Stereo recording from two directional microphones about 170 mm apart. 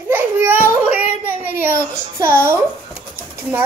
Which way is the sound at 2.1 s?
15° right (ahead or behind).